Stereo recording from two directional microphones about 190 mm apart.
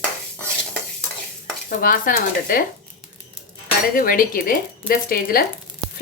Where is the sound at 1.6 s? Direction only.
45° left (ahead or behind).